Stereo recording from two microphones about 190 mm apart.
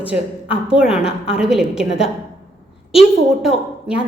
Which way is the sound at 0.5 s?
5° right (ahead or behind).